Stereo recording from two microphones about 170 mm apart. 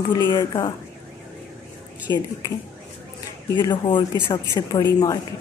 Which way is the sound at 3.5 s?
30° left (ahead or behind).